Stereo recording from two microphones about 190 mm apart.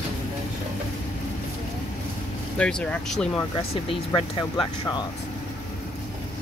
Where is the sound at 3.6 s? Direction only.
25° left (ahead or behind).